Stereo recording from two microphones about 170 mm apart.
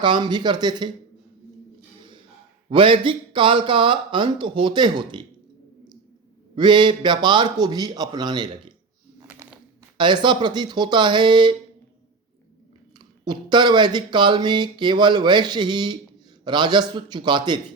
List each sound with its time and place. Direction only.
0.0 s speech: 30° right (ahead or behind)
2.6 s speech: 30° right (ahead or behind)
6.6 s speech: 30° right (ahead or behind)
9.1 s a sound: 15° right (ahead or behind)
10.0 s speech: 25° right (ahead or behind)
13.0 s speech: 25° right (ahead or behind)